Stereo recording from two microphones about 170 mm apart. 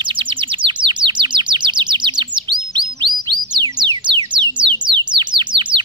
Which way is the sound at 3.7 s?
25° right (ahead or behind).